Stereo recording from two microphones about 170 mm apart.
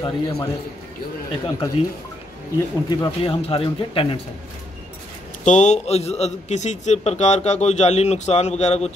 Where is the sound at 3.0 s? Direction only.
30° left (ahead or behind).